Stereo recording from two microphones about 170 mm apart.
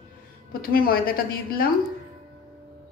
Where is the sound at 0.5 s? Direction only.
60° left (ahead or behind).